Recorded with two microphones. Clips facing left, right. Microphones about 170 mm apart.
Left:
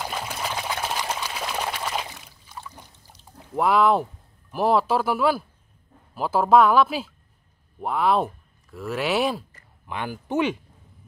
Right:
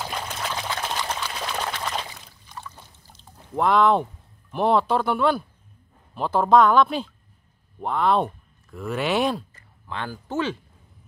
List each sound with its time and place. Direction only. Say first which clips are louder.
0.0 s liquid: left 1 dB; 10° left (ahead or behind)
6.1 s speech: even; 5° left (ahead or behind)
9.8 s speech: left 2 dB; 15° left (ahead or behind)